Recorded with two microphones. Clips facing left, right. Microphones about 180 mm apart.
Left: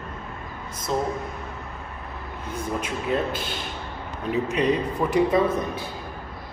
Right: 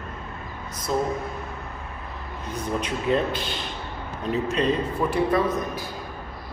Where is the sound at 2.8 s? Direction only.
5° left (ahead or behind).